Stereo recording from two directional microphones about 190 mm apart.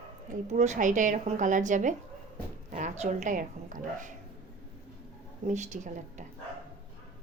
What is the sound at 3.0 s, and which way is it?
Speech, 40° right (ahead or behind).